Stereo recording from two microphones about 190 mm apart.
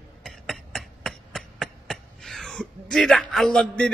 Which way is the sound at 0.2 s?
Centre (ahead or behind).